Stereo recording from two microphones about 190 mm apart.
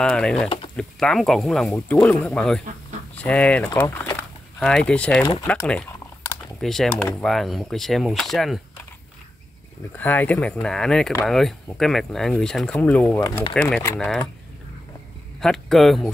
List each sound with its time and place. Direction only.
0.0 s speech: 5° left (ahead or behind)
4.2 s a sound: 5° left (ahead or behind)
5.4 s speech: 15° left (ahead or behind)
6.6 s speech: centre (ahead or behind)
9.9 s speech: 10° left (ahead or behind)
15.4 s speech: centre (ahead or behind)